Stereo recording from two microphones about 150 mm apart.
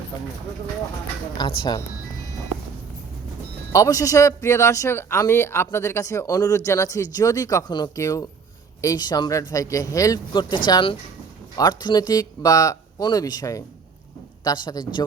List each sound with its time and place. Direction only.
1.4 s speech: 30° left (ahead or behind)
3.7 s speech: 20° left (ahead or behind)